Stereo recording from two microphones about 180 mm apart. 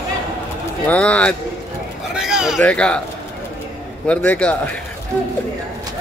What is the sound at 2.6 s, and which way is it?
Speech, 5° left (ahead or behind).